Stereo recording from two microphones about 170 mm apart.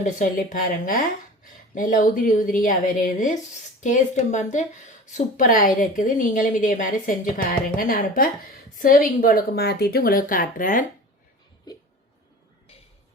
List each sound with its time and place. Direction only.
0.0 s a woman's voice: 50° left (ahead or behind)